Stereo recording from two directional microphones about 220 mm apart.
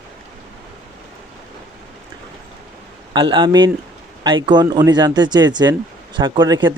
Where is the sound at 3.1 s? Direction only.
20° right (ahead or behind).